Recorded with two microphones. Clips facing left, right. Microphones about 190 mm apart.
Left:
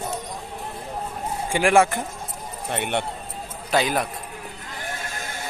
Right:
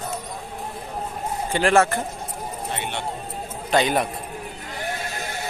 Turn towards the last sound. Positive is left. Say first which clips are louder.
# right 2 dB
turn(degrees=0)  # may be behind; listen again after turning